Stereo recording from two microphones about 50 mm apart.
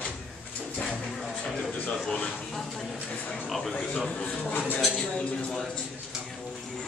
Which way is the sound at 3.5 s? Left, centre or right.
Centre.